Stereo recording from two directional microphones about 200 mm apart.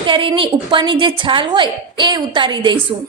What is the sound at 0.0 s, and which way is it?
A woman's voice, 25° right (ahead or behind).